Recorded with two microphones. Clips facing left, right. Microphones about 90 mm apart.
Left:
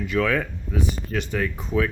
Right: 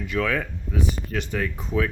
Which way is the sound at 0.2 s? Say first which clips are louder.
Left 2 dB; 55° left (ahead or behind).